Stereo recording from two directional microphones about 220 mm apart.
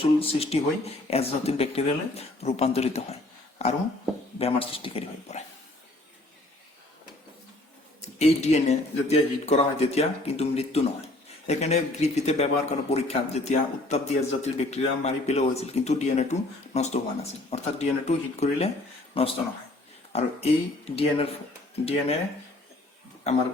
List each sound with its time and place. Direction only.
0.0 s a man's voice: 25° left (ahead or behind)
8.2 s a man's voice: 30° left (ahead or behind)